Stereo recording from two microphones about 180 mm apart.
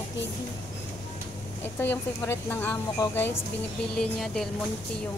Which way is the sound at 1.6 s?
10° left (ahead or behind).